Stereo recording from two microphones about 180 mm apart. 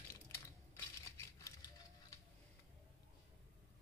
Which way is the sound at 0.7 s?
15° left (ahead or behind).